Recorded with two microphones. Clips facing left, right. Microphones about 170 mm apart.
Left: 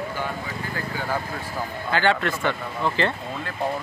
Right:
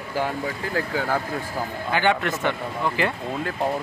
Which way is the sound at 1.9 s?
15° right (ahead or behind).